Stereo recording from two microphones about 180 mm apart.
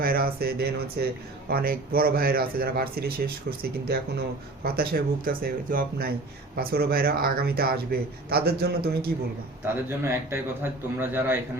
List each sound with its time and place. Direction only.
0.0 s speech: 55° right (ahead or behind)
9.6 s a man's voice: 15° right (ahead or behind)